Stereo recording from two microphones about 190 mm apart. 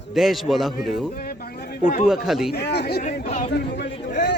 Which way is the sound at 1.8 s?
45° left (ahead or behind).